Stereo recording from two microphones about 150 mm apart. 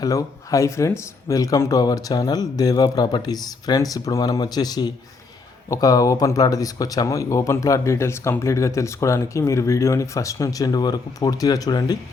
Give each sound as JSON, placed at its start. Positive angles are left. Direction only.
{"t": 0.0, "sound": "speech", "side_deg": 25}